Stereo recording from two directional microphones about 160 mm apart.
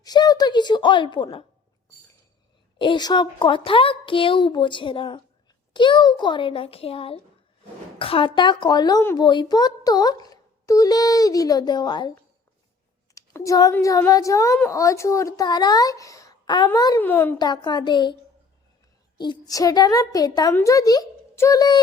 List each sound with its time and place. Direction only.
0.0 s speech: 25° left (ahead or behind)
2.7 s a woman's voice: 30° left (ahead or behind)
13.1 s speech: 20° left (ahead or behind)
17.3 s a child's voice: 25° left (ahead or behind)